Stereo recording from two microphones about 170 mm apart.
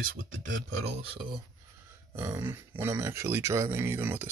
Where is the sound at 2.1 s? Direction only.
15° right (ahead or behind).